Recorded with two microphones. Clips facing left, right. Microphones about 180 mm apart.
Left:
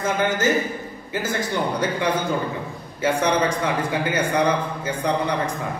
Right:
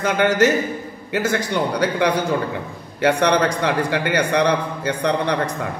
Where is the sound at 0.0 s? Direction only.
75° right (ahead or behind).